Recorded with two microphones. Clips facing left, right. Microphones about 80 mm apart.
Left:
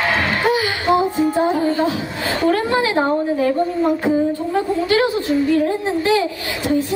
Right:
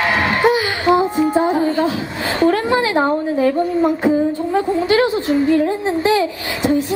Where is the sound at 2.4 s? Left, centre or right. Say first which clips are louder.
Right 2 dB; centre.